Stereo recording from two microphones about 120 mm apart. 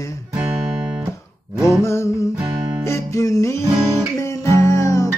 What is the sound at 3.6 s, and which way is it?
Guitar, 25° right (ahead or behind).